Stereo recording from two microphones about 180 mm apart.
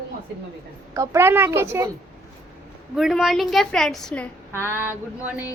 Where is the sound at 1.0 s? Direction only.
15° right (ahead or behind).